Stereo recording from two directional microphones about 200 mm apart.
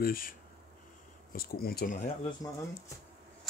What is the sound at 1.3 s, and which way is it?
Speech, 50° left (ahead or behind).